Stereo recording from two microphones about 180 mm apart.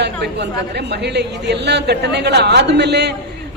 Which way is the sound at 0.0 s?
70° right (ahead or behind).